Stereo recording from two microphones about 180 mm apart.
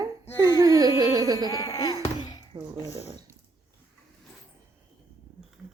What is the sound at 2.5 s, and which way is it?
Laughter, 15° right (ahead or behind).